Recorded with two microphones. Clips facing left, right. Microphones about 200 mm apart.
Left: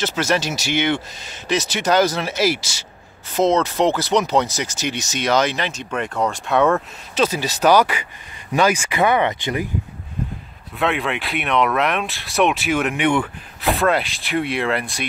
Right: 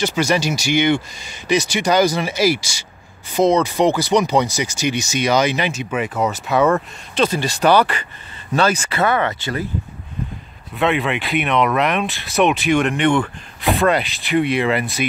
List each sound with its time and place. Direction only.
0.0 s speech: 5° left (ahead or behind)
10.8 s speech: centre (ahead or behind)